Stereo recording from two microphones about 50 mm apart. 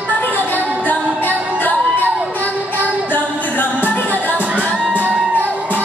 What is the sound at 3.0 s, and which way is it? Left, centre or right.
Music, left.